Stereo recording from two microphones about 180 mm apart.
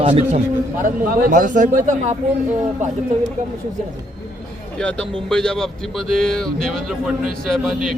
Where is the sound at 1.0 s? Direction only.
50° right (ahead or behind).